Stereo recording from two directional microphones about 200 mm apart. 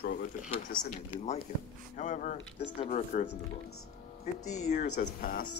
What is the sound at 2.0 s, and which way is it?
Speech, 35° left (ahead or behind).